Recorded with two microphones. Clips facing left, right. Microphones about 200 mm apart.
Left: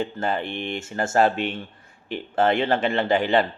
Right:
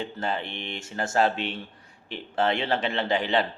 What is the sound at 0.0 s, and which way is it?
Speech, 50° left (ahead or behind).